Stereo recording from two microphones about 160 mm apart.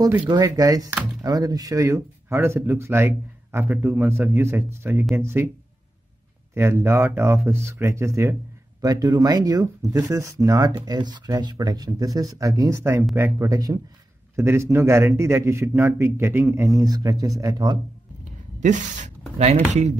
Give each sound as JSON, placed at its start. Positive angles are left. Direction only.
{"t": 0.3, "sound": "speech", "side_deg": -20}
{"t": 6.5, "sound": "speech", "side_deg": -15}
{"t": 18.6, "sound": "speech", "side_deg": -50}